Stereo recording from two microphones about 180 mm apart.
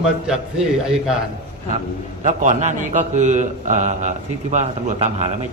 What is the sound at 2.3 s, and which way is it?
A man's voice, 40° right (ahead or behind).